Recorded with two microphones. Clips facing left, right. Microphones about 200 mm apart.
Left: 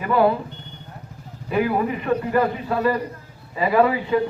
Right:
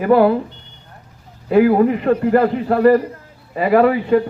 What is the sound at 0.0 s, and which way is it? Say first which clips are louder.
Speech: right 6 dB; 55° right (ahead or behind).